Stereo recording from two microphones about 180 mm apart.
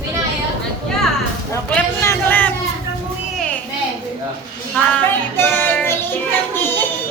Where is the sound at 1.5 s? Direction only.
10° left (ahead or behind).